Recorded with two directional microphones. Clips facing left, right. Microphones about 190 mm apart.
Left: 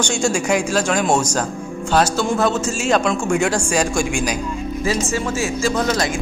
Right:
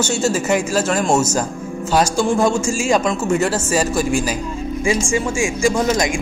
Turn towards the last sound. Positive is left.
turn(degrees=-15)  # may be behind; listen again after turning